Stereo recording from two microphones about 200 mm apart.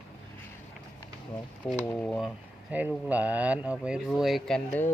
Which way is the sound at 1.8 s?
10° left (ahead or behind).